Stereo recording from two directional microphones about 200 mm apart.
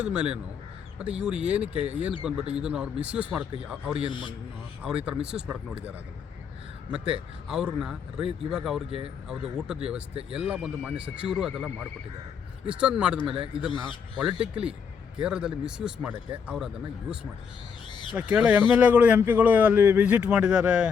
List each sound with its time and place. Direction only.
0.0 s speech: 5° right (ahead or behind)
4.0 s a man's voice: 25° left (ahead or behind)
4.8 s speech: 5° right (ahead or behind)
7.4 s speech: 5° right (ahead or behind)
18.2 s speech: 5° right (ahead or behind)